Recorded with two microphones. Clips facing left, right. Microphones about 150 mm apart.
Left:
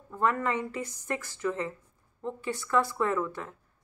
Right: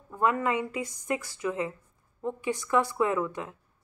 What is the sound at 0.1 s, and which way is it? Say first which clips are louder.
Speech: right 2 dB; 10° right (ahead or behind).